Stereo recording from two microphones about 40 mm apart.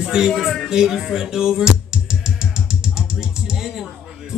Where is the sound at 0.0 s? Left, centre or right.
Centre.